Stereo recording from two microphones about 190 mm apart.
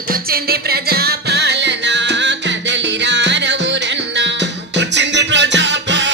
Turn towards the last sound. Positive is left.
turn(degrees=-70)  # may be behind; listen again after turning